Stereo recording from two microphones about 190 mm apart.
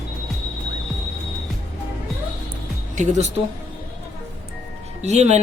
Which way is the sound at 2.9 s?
40° right (ahead or behind).